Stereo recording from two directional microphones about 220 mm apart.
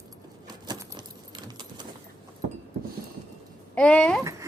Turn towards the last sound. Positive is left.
turn(degrees=-15)  # may be behind; listen again after turning